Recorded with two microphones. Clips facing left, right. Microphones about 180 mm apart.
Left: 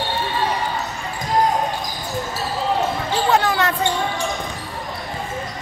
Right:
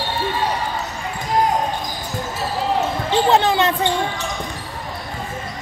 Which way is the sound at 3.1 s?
25° right (ahead or behind).